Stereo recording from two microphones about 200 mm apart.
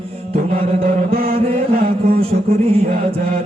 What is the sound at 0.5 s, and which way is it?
Chant, 45° right (ahead or behind).